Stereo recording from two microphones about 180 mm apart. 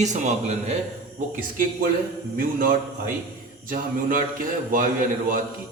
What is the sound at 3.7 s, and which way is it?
Speech, 50° right (ahead or behind).